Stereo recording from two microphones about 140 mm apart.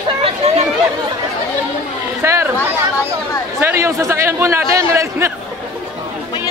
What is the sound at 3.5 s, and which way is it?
A man's voice, 15° right (ahead or behind).